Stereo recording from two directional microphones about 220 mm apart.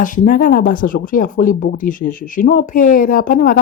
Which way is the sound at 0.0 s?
35° left (ahead or behind).